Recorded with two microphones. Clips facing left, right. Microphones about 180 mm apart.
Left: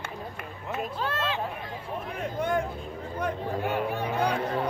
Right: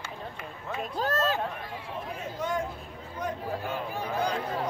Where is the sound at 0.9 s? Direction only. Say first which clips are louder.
Right 7 dB; 40° right (ahead or behind).